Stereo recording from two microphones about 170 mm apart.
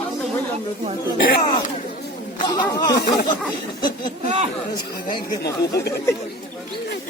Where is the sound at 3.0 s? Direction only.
60° left (ahead or behind).